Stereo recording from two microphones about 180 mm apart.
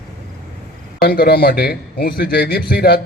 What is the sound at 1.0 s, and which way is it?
A man's voice, 60° left (ahead or behind).